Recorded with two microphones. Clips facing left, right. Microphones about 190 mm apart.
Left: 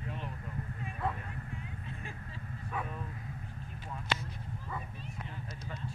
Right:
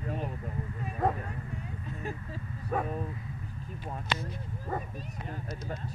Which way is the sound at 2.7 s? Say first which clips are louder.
Right 8 dB; 40° right (ahead or behind).